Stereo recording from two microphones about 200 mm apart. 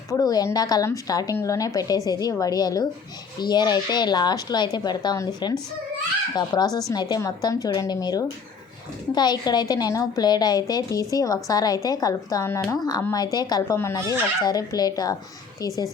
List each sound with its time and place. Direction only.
0.1 s a woman's voice: 20° left (ahead or behind)